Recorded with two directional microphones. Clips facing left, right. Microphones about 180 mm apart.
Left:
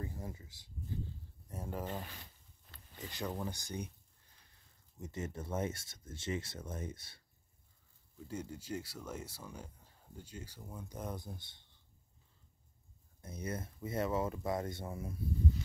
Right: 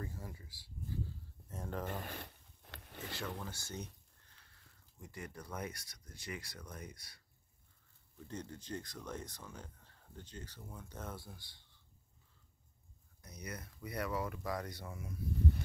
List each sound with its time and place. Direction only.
0.0 s speech: 20° left (ahead or behind)
1.5 s speech: 10° left (ahead or behind)
2.0 s zipper: 55° right (ahead or behind)
3.1 s speech: 15° left (ahead or behind)
8.3 s speech: 10° left (ahead or behind)
13.2 s speech: 25° left (ahead or behind)